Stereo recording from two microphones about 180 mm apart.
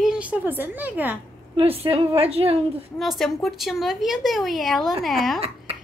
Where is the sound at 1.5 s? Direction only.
30° right (ahead or behind).